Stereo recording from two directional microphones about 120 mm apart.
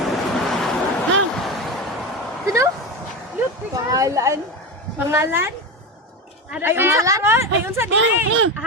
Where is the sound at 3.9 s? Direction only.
30° right (ahead or behind).